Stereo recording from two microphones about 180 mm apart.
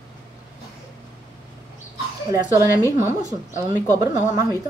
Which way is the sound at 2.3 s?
15° right (ahead or behind).